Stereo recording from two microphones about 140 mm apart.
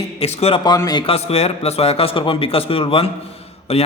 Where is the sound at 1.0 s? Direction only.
45° left (ahead or behind).